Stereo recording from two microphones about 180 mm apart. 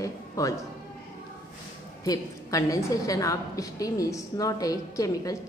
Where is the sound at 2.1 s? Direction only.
20° left (ahead or behind).